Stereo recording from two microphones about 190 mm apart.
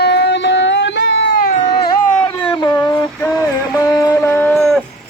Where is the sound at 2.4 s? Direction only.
25° left (ahead or behind).